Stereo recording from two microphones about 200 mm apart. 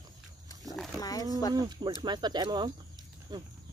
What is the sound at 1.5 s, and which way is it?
Speech, 20° right (ahead or behind).